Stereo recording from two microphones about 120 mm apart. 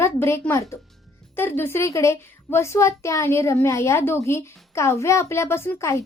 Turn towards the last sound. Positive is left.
turn(degrees=25)  # may be behind; listen again after turning